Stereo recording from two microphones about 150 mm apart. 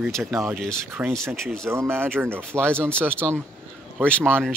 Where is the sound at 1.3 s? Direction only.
5° left (ahead or behind).